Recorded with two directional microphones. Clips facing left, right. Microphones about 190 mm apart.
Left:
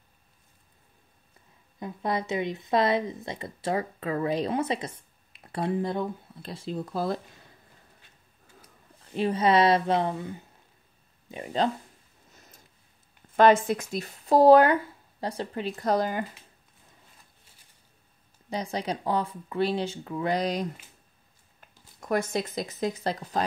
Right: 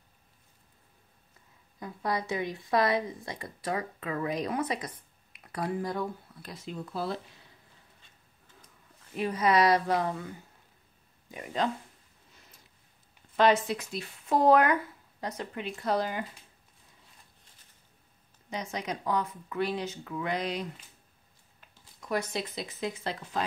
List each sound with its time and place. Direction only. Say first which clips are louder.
1.8 s a woman's voice: left 3 dB; 20° left (ahead or behind); by 7.4 s 45° left (ahead or behind)
9.1 s a woman's voice: left 3 dB; 30° left (ahead or behind)
12.3 s a sound: left 4 dB; 45° left (ahead or behind)
13.4 s speech: left 5 dB; 50° left (ahead or behind)
18.5 s speech: left 4 dB; 35° left (ahead or behind)
21.5 s speech: left 4 dB; 50° left (ahead or behind)